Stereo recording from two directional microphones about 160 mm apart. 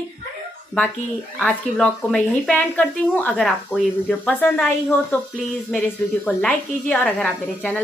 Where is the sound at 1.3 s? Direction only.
5° left (ahead or behind).